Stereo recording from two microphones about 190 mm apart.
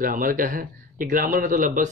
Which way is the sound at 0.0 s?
45° right (ahead or behind).